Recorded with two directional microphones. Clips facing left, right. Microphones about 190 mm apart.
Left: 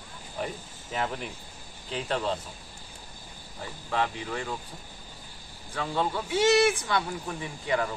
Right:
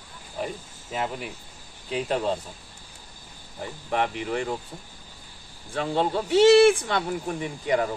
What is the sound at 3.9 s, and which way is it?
Speech, 20° right (ahead or behind).